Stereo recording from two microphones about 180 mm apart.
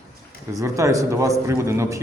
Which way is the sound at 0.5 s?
15° right (ahead or behind).